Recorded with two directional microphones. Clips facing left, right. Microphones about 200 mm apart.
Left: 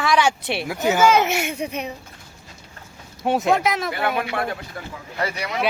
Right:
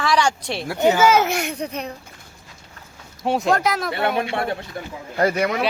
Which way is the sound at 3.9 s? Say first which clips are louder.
Right 2 dB; 25° right (ahead or behind).